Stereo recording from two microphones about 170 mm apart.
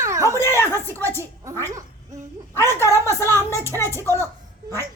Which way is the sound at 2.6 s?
15° left (ahead or behind).